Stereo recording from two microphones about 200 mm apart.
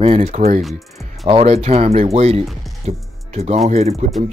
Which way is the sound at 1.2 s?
30° right (ahead or behind).